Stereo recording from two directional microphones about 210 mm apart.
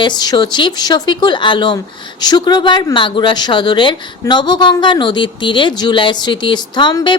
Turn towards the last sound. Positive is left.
turn(degrees=20)  # may be behind; listen again after turning